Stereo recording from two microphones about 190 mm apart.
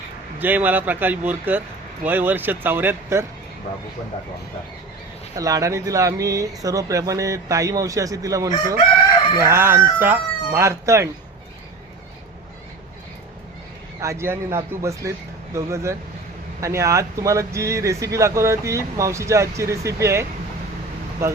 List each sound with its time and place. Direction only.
0.3 s speech: 10° right (ahead or behind)
5.4 s speech: 20° right (ahead or behind)
14.0 s speech: 15° right (ahead or behind)